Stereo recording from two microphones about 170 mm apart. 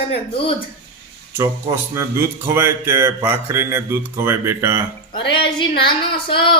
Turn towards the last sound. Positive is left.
turn(degrees=30)  # may be behind; listen again after turning